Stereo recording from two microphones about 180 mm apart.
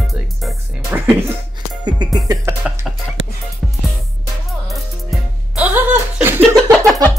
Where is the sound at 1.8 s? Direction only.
25° right (ahead or behind).